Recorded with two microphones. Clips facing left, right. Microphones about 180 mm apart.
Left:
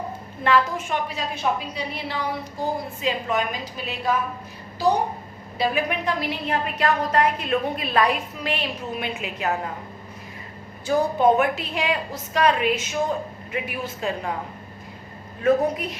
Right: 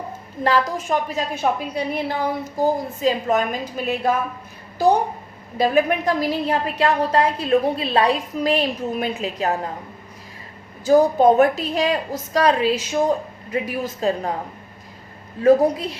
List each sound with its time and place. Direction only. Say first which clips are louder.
0.4 s a woman's voice: right 1 dB; 40° right (ahead or behind)
5.5 s a woman's voice: right 6 dB; 45° right (ahead or behind)
10.8 s a woman's voice: right 5 dB; 40° right (ahead or behind)
15.4 s a woman's voice: right 5 dB; 30° right (ahead or behind)